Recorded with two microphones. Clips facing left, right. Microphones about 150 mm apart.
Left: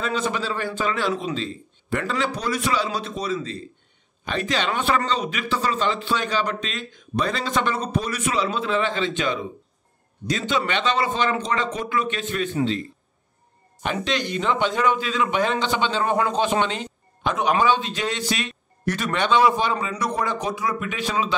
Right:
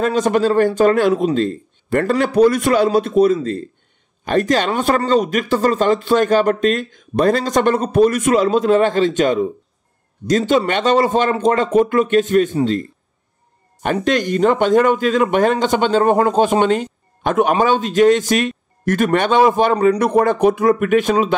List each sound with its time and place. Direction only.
0.0 s speech: 45° right (ahead or behind)
13.8 s speech: 50° right (ahead or behind)